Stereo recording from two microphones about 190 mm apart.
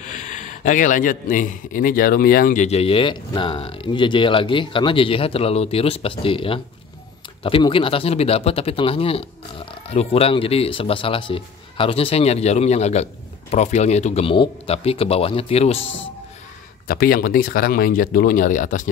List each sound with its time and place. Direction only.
0.0 s a man's voice: 40° left (ahead or behind)
16.8 s speech: 50° left (ahead or behind)